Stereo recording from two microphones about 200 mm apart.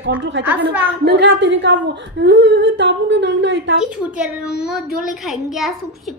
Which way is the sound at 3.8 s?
5° right (ahead or behind).